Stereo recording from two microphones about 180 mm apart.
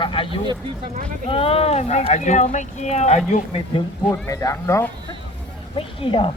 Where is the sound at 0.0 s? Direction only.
30° left (ahead or behind).